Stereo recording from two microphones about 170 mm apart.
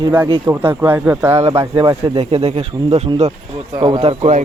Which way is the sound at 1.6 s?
30° right (ahead or behind).